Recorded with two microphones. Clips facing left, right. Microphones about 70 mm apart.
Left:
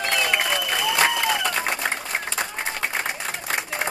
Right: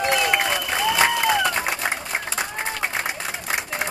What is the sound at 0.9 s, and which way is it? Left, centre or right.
Applause, centre.